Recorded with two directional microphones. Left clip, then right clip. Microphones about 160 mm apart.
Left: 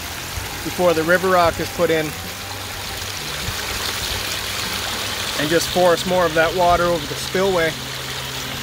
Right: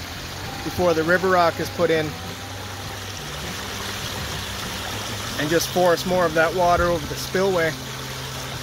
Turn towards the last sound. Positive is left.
turn(degrees=5)  # may be behind; listen again after turning